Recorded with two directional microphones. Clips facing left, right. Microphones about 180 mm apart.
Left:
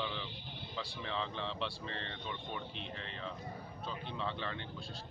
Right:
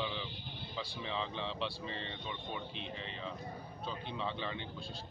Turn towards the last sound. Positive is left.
turn(degrees=0)  # may be behind; listen again after turning